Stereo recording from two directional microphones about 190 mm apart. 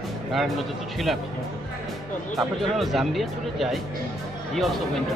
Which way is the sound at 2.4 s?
Centre (ahead or behind).